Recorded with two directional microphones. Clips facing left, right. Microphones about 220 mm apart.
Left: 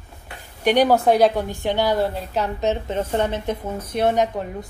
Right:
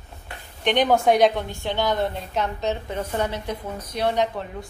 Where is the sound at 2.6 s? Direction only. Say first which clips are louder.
Left 4 dB; 20° left (ahead or behind).